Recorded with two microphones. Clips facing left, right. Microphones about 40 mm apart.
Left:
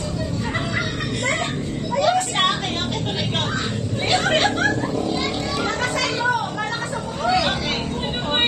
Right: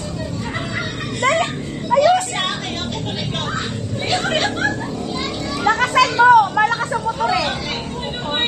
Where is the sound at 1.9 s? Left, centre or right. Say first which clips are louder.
Right 8 dB; right.